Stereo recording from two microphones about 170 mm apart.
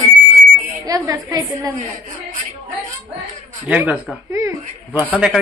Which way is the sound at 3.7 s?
10° right (ahead or behind).